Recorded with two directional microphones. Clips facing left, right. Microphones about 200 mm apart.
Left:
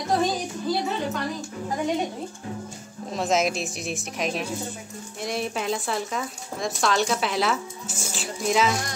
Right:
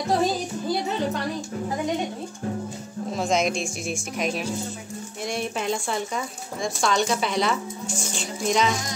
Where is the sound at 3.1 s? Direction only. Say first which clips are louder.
Even; centre (ahead or behind).